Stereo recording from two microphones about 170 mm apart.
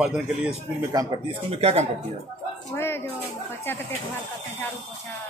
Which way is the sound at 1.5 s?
40° right (ahead or behind).